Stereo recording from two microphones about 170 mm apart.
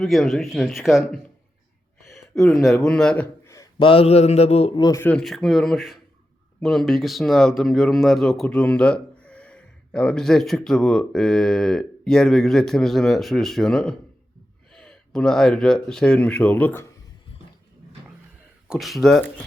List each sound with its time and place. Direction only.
0.0 s speech: centre (ahead or behind)
2.5 s speech: 5° left (ahead or behind)
3.4 s a man's voice: 20° left (ahead or behind)
5.0 s speech: 5° left (ahead or behind)
18.7 s speech: centre (ahead or behind)